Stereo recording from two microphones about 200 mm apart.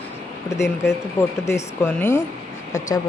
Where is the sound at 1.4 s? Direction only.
15° left (ahead or behind).